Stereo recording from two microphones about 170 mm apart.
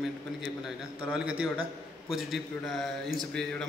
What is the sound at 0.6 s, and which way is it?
A man's voice, 5° right (ahead or behind).